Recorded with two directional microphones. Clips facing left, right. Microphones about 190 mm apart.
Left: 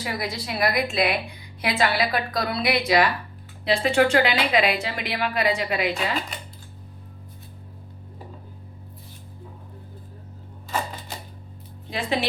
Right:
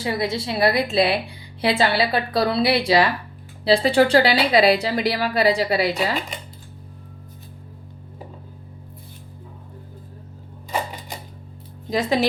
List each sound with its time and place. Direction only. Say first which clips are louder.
0.0 s a woman's voice: right 6 dB; 25° right (ahead or behind)
11.9 s speech: right 7 dB; 40° right (ahead or behind)